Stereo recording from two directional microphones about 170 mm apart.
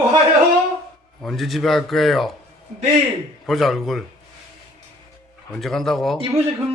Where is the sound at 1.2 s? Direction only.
Centre (ahead or behind).